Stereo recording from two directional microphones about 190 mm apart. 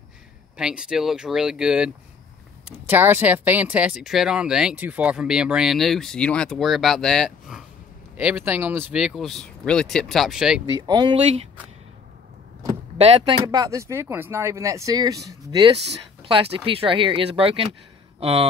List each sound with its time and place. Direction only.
0.6 s speech: 5° right (ahead or behind)
2.9 s speech: 10° right (ahead or behind)
10.7 s speech: 20° right (ahead or behind)
12.9 s speech: 30° right (ahead or behind)